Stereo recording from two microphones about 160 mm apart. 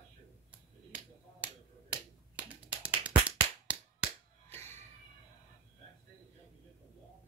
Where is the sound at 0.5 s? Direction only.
10° right (ahead or behind).